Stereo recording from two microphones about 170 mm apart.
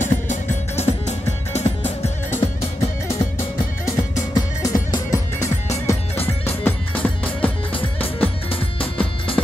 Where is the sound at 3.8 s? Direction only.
20° left (ahead or behind).